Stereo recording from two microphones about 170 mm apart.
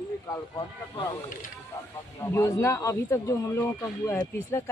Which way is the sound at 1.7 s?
15° left (ahead or behind).